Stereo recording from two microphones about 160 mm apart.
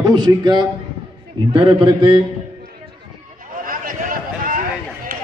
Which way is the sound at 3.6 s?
60° right (ahead or behind).